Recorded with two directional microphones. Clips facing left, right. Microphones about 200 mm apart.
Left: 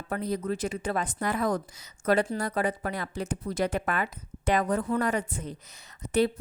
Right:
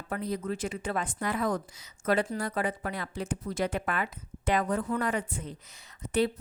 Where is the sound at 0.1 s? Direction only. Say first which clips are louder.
Left 3 dB; 40° left (ahead or behind).